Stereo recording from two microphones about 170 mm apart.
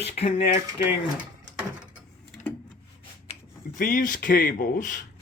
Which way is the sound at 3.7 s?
50° left (ahead or behind).